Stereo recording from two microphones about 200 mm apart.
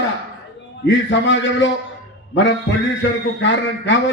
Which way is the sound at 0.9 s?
65° left (ahead or behind).